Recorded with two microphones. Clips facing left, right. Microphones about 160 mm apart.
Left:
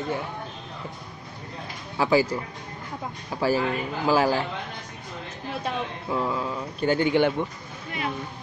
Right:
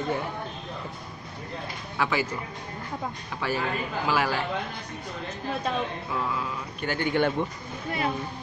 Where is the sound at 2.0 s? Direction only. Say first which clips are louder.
Left 6 dB; 30° left (ahead or behind).